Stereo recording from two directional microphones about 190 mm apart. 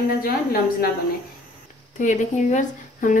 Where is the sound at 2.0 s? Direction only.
40° left (ahead or behind).